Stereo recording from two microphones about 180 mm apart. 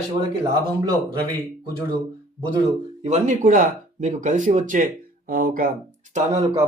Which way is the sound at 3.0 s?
40° right (ahead or behind).